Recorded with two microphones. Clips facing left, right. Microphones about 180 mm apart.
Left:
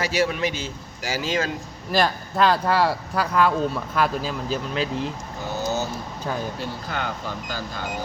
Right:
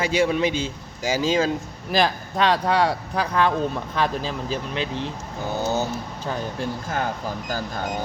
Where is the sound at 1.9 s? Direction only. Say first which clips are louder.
Even; centre (ahead or behind).